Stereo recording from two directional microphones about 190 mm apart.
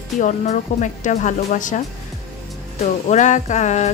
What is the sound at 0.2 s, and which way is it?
Speech, 40° left (ahead or behind).